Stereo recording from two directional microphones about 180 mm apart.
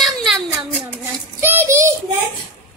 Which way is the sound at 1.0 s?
15° right (ahead or behind).